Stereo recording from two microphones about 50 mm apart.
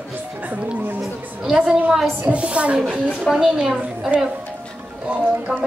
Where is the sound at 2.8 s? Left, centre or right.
Centre.